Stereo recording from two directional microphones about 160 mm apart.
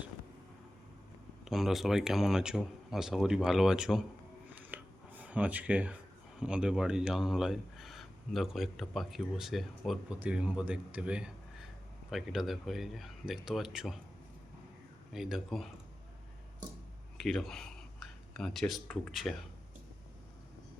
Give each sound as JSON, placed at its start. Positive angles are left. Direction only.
{"t": 1.5, "sound": "speech", "side_deg": 0}
{"t": 4.5, "sound": "a sound", "side_deg": -10}
{"t": 6.4, "sound": "a man's voice", "side_deg": -5}
{"t": 15.1, "sound": "speech", "side_deg": -5}
{"t": 17.2, "sound": "speech", "side_deg": 0}